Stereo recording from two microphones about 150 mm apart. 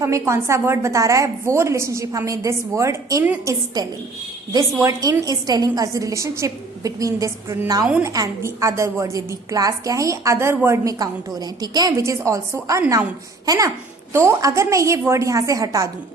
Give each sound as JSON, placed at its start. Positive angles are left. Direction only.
{"t": 0.0, "sound": "a woman's voice", "side_deg": -20}